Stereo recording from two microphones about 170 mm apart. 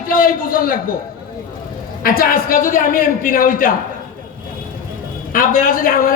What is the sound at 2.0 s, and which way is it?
A man's voice, 55° left (ahead or behind).